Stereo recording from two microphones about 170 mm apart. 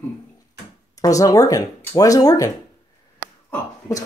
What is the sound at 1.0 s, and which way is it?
Speech, 20° left (ahead or behind).